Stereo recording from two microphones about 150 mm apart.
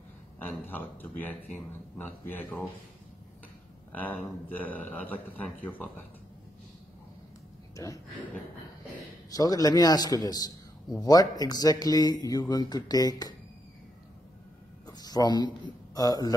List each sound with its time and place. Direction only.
0.4 s speech: 10° left (ahead or behind)
3.9 s speech: 10° left (ahead or behind)
7.7 s speech: 20° left (ahead or behind)
9.3 s speech: 25° left (ahead or behind)
14.9 s a sound: 25° left (ahead or behind)
15.9 s speech: 25° left (ahead or behind)